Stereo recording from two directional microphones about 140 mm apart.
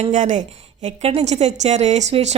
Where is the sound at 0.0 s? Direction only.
60° right (ahead or behind).